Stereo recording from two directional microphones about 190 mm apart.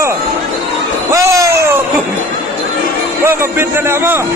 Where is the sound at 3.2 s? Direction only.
15° right (ahead or behind).